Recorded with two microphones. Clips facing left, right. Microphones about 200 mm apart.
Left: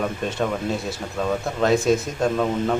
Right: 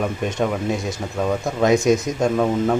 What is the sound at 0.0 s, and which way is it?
Speech, 15° right (ahead or behind).